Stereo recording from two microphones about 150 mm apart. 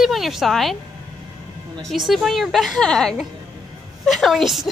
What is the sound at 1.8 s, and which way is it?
A woman's voice, centre (ahead or behind).